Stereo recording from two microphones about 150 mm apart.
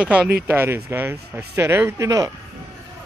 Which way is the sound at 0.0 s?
5° right (ahead or behind).